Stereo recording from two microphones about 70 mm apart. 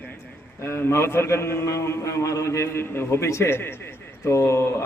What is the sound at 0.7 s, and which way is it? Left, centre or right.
A man's voice, left.